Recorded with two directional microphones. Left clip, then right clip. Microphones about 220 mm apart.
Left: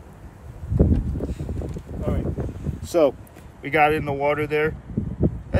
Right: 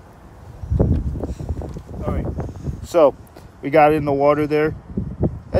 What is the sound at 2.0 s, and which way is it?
Speech, 5° right (ahead or behind).